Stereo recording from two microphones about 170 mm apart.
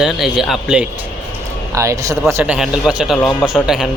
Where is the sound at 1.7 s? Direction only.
20° right (ahead or behind).